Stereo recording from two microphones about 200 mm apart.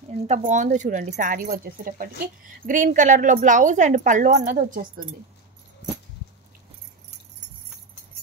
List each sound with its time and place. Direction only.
0.3 s a woman's voice: 35° right (ahead or behind)
4.3 s a woman's voice: 55° right (ahead or behind)
4.6 s speech: 40° right (ahead or behind)